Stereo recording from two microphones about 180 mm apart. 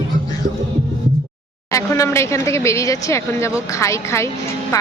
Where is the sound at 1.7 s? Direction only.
15° left (ahead or behind).